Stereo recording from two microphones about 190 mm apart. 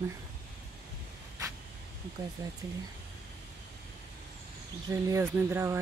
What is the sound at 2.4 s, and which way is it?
Speech, 20° right (ahead or behind).